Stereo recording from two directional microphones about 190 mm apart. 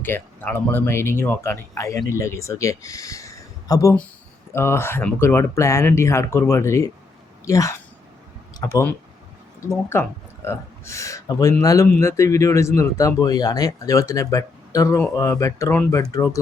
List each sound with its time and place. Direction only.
0.0 s speech: 10° left (ahead or behind)